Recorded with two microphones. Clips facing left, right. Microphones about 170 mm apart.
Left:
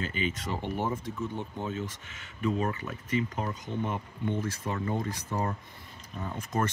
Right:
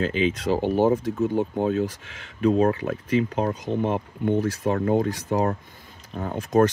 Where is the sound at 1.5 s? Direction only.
65° right (ahead or behind).